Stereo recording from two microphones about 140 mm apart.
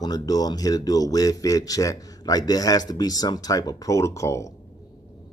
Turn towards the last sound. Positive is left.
turn(degrees=20)  # may be behind; listen again after turning